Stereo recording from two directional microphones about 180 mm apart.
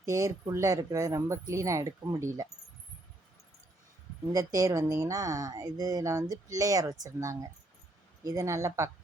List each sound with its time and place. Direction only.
0.0 s speech: 20° right (ahead or behind)
4.3 s speech: 20° right (ahead or behind)